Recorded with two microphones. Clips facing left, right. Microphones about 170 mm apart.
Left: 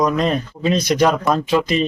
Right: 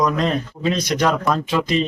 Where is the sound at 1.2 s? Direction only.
20° left (ahead or behind).